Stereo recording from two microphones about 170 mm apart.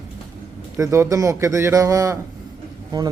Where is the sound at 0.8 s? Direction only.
20° right (ahead or behind).